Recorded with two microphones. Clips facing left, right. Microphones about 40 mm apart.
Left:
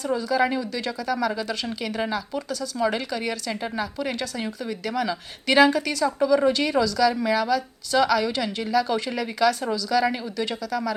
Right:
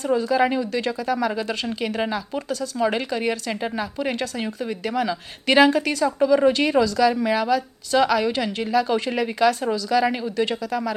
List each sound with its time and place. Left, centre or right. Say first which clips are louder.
0.0 s speech: right 3 dB; right
2.7 s a woman's voice: right 2 dB; centre